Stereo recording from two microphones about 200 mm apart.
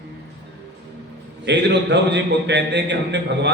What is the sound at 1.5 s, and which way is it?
A man's voice, 60° right (ahead or behind).